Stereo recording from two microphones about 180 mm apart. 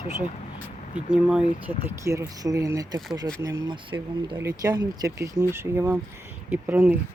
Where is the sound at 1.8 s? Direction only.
15° right (ahead or behind).